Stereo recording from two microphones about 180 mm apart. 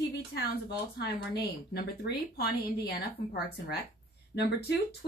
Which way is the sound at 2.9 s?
60° left (ahead or behind).